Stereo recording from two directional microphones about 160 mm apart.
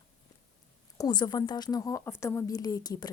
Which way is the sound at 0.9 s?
25° left (ahead or behind).